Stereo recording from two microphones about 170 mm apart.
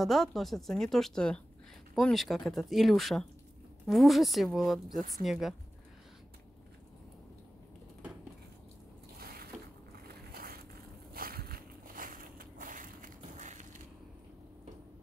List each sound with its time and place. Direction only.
0.0 s speech: centre (ahead or behind)
9.2 s a sound: 60° right (ahead or behind)
10.3 s boat: 60° right (ahead or behind)
11.1 s crushing: 60° right (ahead or behind); by 13.8 s 45° right (ahead or behind)